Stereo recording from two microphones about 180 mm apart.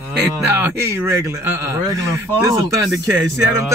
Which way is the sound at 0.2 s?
15° right (ahead or behind).